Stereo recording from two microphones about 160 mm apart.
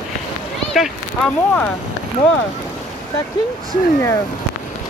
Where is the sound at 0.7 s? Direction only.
5° left (ahead or behind).